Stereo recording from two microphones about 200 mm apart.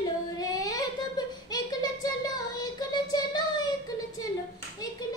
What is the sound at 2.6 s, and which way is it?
Child singing, 20° left (ahead or behind).